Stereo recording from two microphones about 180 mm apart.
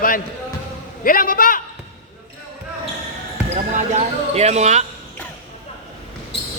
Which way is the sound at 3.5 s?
35° right (ahead or behind).